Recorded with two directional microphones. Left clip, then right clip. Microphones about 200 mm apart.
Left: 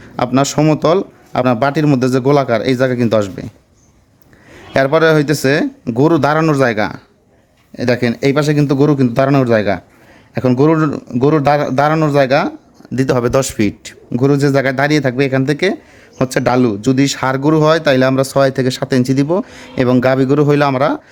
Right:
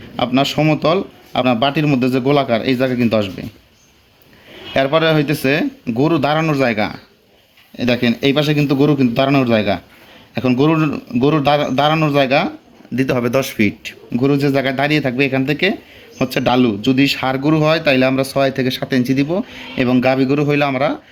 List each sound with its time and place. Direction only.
0.2 s speech: 60° left (ahead or behind)
4.7 s speech: 55° left (ahead or behind)